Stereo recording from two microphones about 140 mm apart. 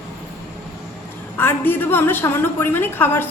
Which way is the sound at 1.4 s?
15° left (ahead or behind).